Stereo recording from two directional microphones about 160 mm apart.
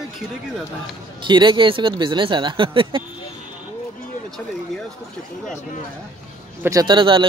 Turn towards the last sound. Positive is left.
turn(degrees=-30)  # may be behind; listen again after turning